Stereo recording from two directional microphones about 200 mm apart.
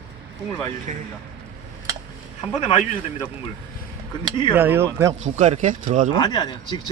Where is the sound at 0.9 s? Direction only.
40° right (ahead or behind).